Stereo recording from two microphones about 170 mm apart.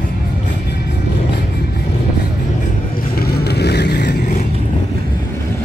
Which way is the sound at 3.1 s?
65° left (ahead or behind).